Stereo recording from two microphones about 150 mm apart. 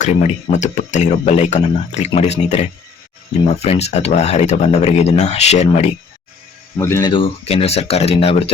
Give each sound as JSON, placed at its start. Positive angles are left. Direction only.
{"t": 0.0, "sound": "speech", "side_deg": 50}
{"t": 6.7, "sound": "speech", "side_deg": 20}
{"t": 7.1, "sound": "speech", "side_deg": 40}